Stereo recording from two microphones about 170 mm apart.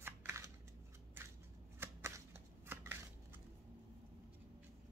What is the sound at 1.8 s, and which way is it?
Shuffling cards, 15° right (ahead or behind).